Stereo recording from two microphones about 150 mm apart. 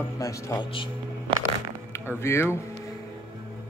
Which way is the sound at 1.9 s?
15° left (ahead or behind).